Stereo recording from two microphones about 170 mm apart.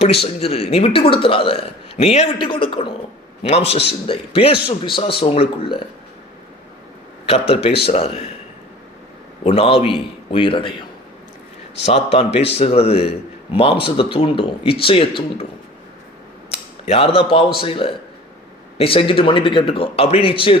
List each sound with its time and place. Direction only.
0.0 s a man's voice: 35° left (ahead or behind)
7.3 s a man's voice: 35° left (ahead or behind)
9.4 s a man's voice: 35° left (ahead or behind)
11.8 s a man's voice: 35° left (ahead or behind)
16.5 s a man's voice: 35° left (ahead or behind)